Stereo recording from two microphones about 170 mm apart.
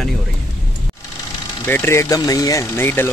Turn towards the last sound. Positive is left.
turn(degrees=15)  # may be behind; listen again after turning